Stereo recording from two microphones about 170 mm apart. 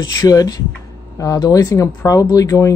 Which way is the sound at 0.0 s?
20° left (ahead or behind).